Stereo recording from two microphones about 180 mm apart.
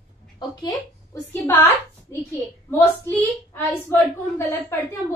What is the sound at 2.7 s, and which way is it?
A woman's voice, 10° left (ahead or behind).